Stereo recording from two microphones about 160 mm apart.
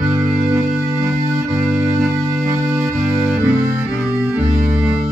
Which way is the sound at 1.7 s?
5° right (ahead or behind).